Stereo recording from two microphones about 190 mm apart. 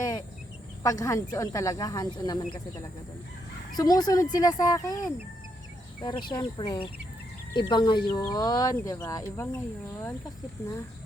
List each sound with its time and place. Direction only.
0.8 s speech: 15° left (ahead or behind)
3.8 s speech: 20° left (ahead or behind)
10.6 s speech: 15° left (ahead or behind)